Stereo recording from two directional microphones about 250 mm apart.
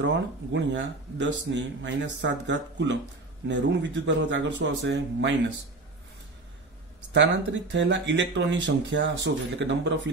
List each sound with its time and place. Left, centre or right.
0.0 s speech: right
7.7 s speech: right